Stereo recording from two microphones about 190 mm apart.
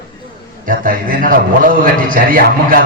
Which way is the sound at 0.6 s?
45° right (ahead or behind).